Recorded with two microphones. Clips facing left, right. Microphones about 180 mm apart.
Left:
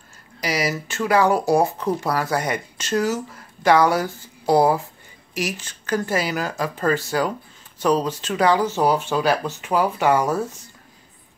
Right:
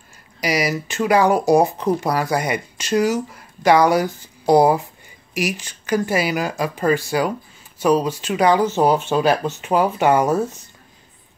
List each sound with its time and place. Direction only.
0.4 s speech: 15° right (ahead or behind)